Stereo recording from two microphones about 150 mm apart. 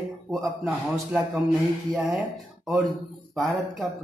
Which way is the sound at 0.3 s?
Centre (ahead or behind).